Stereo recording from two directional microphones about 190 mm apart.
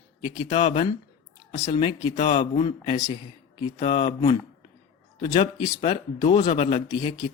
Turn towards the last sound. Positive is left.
turn(degrees=25)  # may be behind; listen again after turning